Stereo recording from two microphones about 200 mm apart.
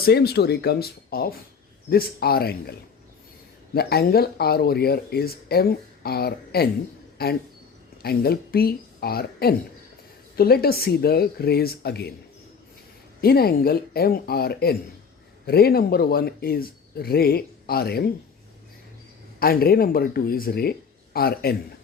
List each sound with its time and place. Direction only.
0.0 s speech: 55° left (ahead or behind)
3.8 s speech: 50° left (ahead or behind)
13.2 s speech: 50° left (ahead or behind)
19.4 s speech: 50° left (ahead or behind)